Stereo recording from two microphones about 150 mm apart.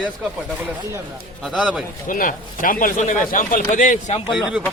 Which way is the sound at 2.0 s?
65° left (ahead or behind).